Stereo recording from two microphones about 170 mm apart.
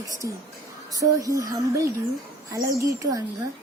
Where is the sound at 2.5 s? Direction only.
15° right (ahead or behind).